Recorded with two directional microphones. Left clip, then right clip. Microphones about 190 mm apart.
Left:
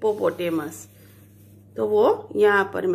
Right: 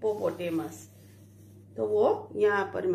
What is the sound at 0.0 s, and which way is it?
Speech, 50° left (ahead or behind).